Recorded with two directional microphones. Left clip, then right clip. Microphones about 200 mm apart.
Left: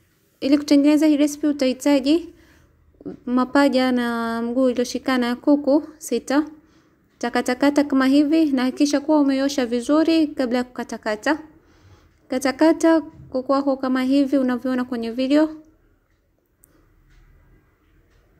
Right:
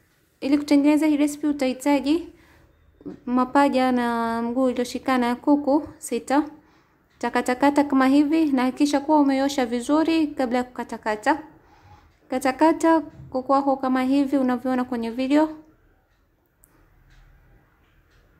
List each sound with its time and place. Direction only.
0.4 s a woman's voice: 15° left (ahead or behind)
3.3 s a woman's voice: 15° left (ahead or behind)